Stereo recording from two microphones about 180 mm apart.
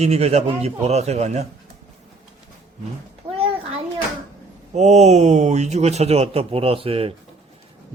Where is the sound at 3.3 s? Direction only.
30° right (ahead or behind).